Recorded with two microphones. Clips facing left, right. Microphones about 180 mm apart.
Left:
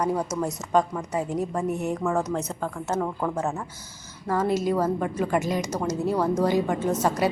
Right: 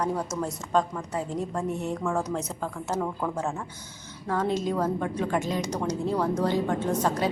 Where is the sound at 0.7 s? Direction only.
10° left (ahead or behind).